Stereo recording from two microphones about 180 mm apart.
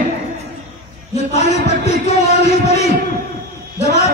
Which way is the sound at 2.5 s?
35° left (ahead or behind).